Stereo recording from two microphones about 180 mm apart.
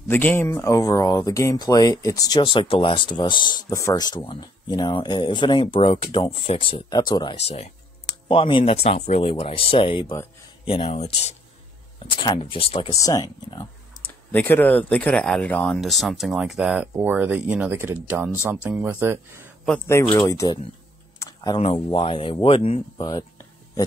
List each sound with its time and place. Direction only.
0.1 s speech: 10° left (ahead or behind)
7.3 s speech: 35° left (ahead or behind)
12.9 s speech: 20° left (ahead or behind)
14.0 s speech: 10° left (ahead or behind); by 19.4 s 15° right (ahead or behind)
20.1 s speech: 20° left (ahead or behind)
21.2 s a sound: 20° left (ahead or behind)
21.9 s speech: 30° left (ahead or behind)